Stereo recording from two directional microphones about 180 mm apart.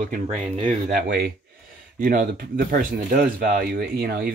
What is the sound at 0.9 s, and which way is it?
Speech, 55° right (ahead or behind).